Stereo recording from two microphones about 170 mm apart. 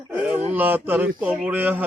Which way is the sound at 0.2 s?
5° right (ahead or behind).